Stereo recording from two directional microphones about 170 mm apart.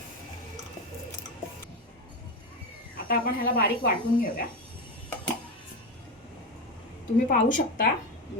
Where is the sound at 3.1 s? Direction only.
60° left (ahead or behind).